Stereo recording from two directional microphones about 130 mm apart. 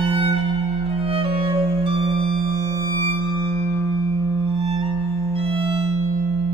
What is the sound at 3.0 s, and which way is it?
Music, 20° left (ahead or behind).